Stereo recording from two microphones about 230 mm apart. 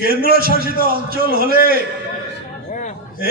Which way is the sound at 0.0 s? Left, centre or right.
Right.